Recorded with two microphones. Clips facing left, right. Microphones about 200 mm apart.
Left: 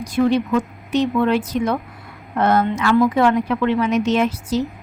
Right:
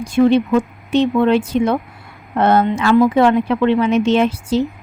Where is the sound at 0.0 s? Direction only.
25° right (ahead or behind).